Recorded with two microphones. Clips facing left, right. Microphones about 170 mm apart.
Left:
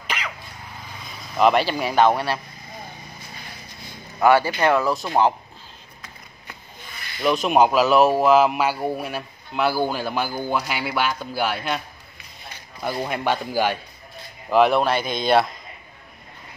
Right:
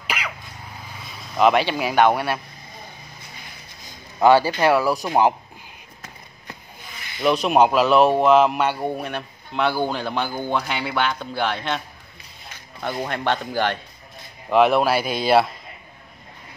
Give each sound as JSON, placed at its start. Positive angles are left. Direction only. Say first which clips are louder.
{"t": 0.0, "sound": "sneeze", "louder": "right 1 dB", "side_deg": -10}
{"t": 1.3, "sound": "a man's voice", "louder": "even", "side_deg": 0}
{"t": 4.2, "sound": "speech", "louder": "right 2 dB", "side_deg": -15}
{"t": 7.2, "sound": "a man's voice", "louder": "right 1 dB", "side_deg": 0}
{"t": 12.8, "sound": "a man's voice", "louder": "even", "side_deg": 5}